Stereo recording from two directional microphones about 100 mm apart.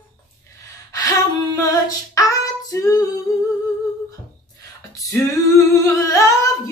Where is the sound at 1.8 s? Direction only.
35° left (ahead or behind).